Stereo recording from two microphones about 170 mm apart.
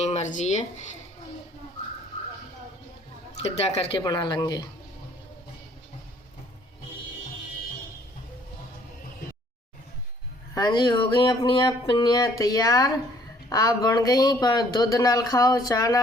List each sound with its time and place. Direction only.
0.0 s speech: 40° left (ahead or behind)
3.3 s speech: 40° left (ahead or behind)
3.9 s speech: 25° left (ahead or behind)
10.5 s speech: 25° left (ahead or behind)